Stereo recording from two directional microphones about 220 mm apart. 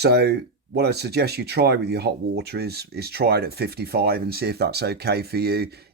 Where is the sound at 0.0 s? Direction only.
45° right (ahead or behind).